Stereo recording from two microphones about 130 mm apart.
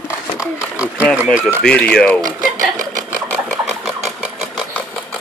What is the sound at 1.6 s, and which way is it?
Speech, 10° left (ahead or behind).